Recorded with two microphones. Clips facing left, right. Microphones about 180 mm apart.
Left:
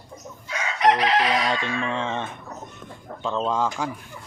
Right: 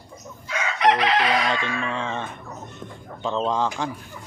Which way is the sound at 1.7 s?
20° left (ahead or behind).